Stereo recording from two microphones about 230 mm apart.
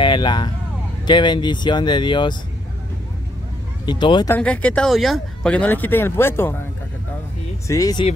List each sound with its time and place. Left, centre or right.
0.0 s speech: centre
3.8 s speech: centre
4.3 s speech: centre
7.6 s speech: centre